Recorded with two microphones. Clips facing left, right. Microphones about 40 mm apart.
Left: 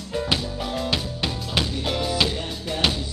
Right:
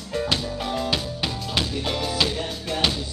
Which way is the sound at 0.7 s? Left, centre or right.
Centre.